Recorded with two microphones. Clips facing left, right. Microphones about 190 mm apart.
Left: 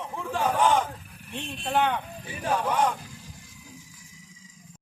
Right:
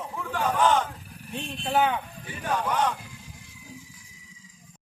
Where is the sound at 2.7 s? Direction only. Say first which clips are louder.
Left 1 dB; 10° left (ahead or behind).